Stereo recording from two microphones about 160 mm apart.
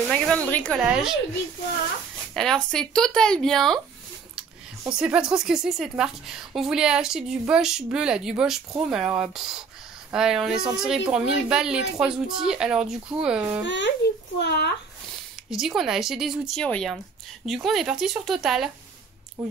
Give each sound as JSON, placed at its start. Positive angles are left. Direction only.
{"t": 0.1, "sound": "speech", "side_deg": 5}
{"t": 0.7, "sound": "a woman's voice", "side_deg": -5}
{"t": 2.3, "sound": "a woman's voice", "side_deg": 0}
{"t": 4.9, "sound": "a woman's voice", "side_deg": -5}
{"t": 13.7, "sound": "speech", "side_deg": 90}
{"t": 15.5, "sound": "a woman's voice", "side_deg": -5}